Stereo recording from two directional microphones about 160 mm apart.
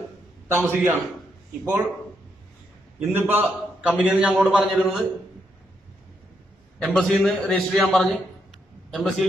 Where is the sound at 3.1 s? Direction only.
15° right (ahead or behind).